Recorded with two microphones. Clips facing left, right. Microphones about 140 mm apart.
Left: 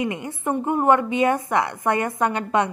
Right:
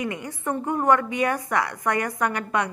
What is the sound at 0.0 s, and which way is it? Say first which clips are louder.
A woman's voice: left 3 dB; 20° left (ahead or behind).